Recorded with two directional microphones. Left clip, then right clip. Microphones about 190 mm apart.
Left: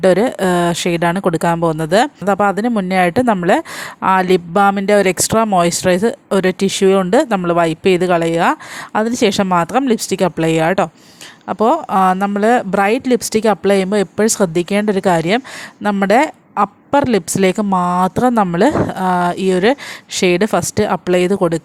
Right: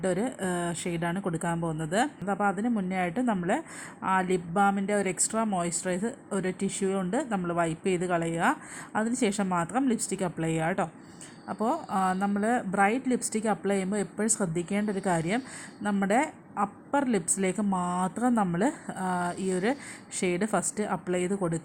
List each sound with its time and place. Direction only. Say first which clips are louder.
0.0 s speech: left 17 dB; 45° left (ahead or behind)